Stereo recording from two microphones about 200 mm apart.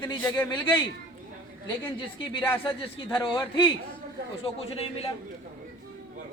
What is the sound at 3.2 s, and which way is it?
A man's voice, 25° left (ahead or behind).